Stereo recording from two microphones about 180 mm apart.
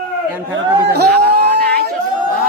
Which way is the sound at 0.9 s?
65° right (ahead or behind).